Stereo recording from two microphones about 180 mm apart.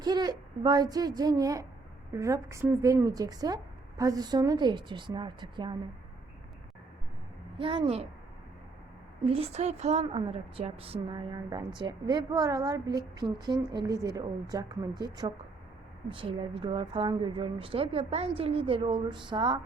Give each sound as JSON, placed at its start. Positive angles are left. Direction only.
{"t": 0.0, "sound": "a woman's voice", "side_deg": -20}
{"t": 7.6, "sound": "a woman's voice", "side_deg": -30}
{"t": 9.2, "sound": "a woman's voice", "side_deg": -35}
{"t": 16.0, "sound": "a woman's voice", "side_deg": -30}